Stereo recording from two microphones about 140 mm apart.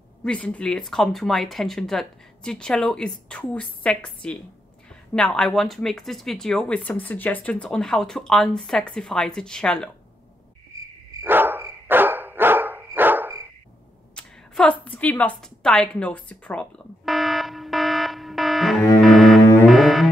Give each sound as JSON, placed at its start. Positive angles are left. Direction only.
{"t": 0.2, "sound": "speech", "side_deg": 5}
{"t": 10.7, "sound": "cricket", "side_deg": -25}
{"t": 11.2, "sound": "dog", "side_deg": -15}
{"t": 14.1, "sound": "a sound", "side_deg": 5}
{"t": 18.9, "sound": "double bass", "side_deg": 0}
{"t": 19.7, "sound": "music", "side_deg": 0}